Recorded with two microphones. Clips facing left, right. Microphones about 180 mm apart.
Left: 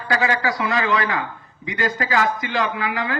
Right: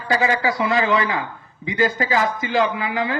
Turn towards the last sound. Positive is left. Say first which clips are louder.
# right 2 dB
turn(degrees=-25)  # may be behind; listen again after turning